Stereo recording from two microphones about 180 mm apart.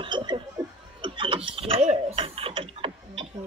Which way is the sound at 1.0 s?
30° right (ahead or behind).